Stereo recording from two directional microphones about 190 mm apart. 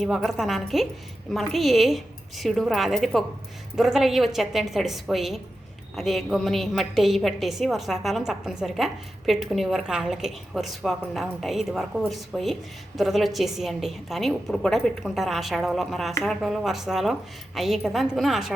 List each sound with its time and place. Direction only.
0.0 s a woman's voice: centre (ahead or behind)